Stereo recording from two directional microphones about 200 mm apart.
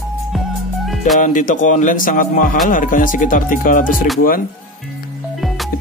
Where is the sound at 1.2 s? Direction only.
40° left (ahead or behind).